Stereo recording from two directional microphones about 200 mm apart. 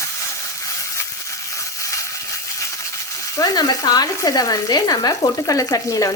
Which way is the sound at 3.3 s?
20° left (ahead or behind).